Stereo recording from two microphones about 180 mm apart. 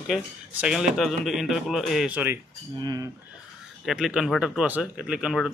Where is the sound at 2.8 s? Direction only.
25° right (ahead or behind).